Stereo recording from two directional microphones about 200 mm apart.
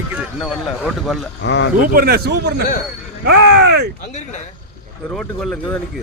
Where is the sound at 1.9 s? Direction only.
50° right (ahead or behind).